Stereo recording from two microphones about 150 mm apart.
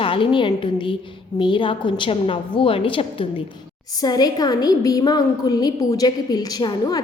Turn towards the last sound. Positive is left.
turn(degrees=30)  # may be behind; listen again after turning